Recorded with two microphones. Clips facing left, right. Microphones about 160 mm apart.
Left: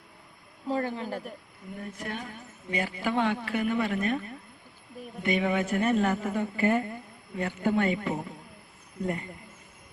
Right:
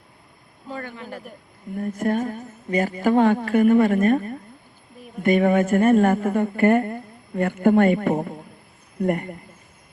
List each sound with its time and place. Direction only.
0.7 s speech: 30° left (ahead or behind)
2.0 s a woman's voice: 45° right (ahead or behind)